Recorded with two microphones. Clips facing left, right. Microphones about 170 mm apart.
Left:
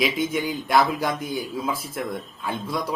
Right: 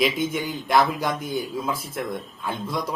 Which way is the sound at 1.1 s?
55° right (ahead or behind).